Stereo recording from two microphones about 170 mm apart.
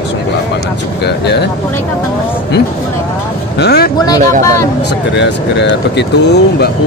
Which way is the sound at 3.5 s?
70° left (ahead or behind).